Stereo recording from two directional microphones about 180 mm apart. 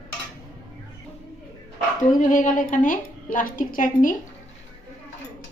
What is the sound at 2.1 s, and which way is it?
A woman's voice, 45° left (ahead or behind).